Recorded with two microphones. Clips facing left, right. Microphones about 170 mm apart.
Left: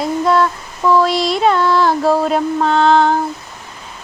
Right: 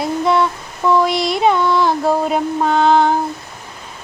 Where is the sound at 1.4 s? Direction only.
15° right (ahead or behind).